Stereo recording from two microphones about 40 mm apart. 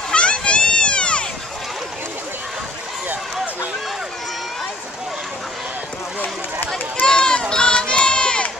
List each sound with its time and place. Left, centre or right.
0.1 s children playing: left
7.1 s run: left